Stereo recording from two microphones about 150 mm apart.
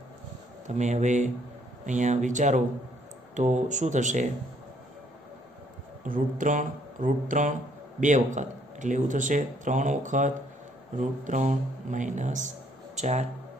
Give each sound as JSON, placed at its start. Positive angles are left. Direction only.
{"t": 0.7, "sound": "speech", "side_deg": -50}
{"t": 6.0, "sound": "a man's voice", "side_deg": -65}